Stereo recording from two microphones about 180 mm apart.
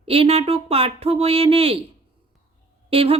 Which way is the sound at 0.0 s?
30° right (ahead or behind).